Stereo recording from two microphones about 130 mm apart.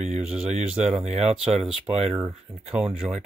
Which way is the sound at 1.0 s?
60° right (ahead or behind).